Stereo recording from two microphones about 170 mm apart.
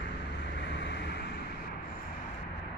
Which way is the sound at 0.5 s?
90° left.